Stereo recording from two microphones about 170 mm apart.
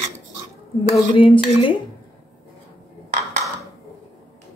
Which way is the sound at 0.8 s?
30° left (ahead or behind).